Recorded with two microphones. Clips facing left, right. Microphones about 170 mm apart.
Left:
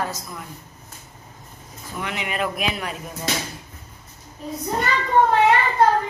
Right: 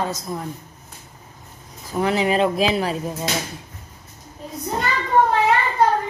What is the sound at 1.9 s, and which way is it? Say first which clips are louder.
Speech: right 9 dB; 35° right (ahead or behind).